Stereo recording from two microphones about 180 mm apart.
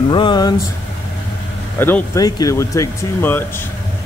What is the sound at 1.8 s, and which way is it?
Speech, 15° left (ahead or behind).